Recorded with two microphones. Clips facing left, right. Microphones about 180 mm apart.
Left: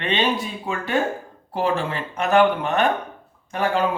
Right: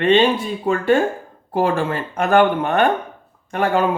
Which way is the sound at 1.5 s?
50° right (ahead or behind).